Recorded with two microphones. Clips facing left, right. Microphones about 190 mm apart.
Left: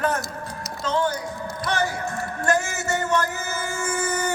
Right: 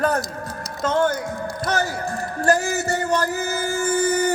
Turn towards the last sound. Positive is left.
turn(degrees=-35)  # may be behind; listen again after turning